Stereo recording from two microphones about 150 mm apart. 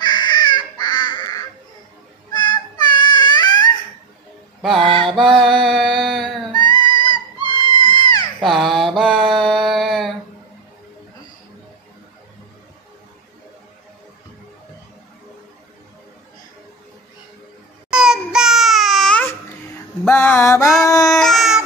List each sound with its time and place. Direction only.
0.0 s honk: 30° left (ahead or behind)
2.3 s child singing: 30° left (ahead or behind)
4.6 s music: centre (ahead or behind)
5.0 s a sound: 5° left (ahead or behind)
5.4 s carnatic music: centre (ahead or behind)
6.5 s music: 30° left (ahead or behind)
7.4 s a sound: 30° left (ahead or behind)
8.4 s mantra: centre (ahead or behind)
17.8 s a sound: 5° right (ahead or behind); by 21.2 s 25° left (ahead or behind)
21.2 s babbling: centre (ahead or behind)